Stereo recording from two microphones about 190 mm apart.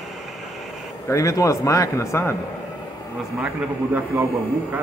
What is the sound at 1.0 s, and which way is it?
Speech, 15° left (ahead or behind).